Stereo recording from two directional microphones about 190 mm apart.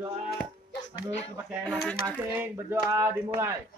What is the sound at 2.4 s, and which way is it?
A man's voice, 15° right (ahead or behind).